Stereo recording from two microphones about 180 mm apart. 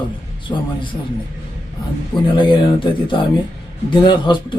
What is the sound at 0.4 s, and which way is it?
Music, 25° left (ahead or behind).